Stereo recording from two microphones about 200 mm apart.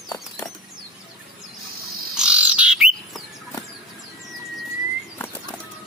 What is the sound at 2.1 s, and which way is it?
Bird, 5° right (ahead or behind).